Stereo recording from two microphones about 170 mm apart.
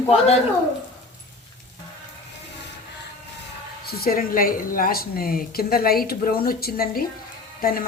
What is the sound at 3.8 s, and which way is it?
A woman's voice, 65° left (ahead or behind).